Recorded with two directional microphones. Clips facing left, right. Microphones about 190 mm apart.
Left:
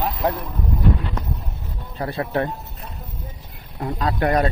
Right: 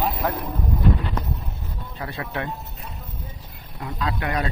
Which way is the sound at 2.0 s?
40° left (ahead or behind).